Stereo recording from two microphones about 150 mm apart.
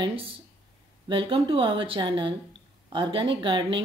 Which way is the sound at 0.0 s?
40° right (ahead or behind).